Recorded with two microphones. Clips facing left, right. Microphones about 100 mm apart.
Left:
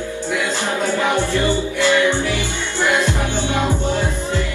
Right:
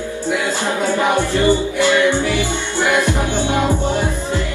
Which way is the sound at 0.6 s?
20° right (ahead or behind).